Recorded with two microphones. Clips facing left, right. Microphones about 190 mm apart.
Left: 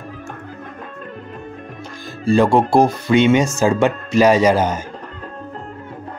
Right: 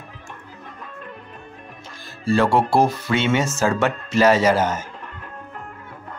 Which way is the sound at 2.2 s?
15° left (ahead or behind).